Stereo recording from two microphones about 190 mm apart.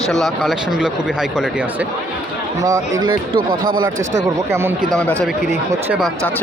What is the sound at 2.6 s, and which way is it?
Speech, 15° right (ahead or behind).